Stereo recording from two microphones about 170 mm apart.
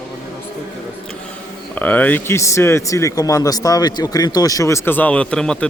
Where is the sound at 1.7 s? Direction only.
10° left (ahead or behind).